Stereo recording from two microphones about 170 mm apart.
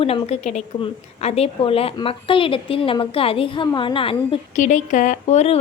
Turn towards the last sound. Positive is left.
turn(degrees=40)  # may be behind; listen again after turning